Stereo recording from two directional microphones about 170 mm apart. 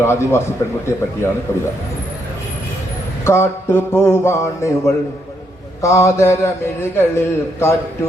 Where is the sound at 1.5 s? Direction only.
15° left (ahead or behind).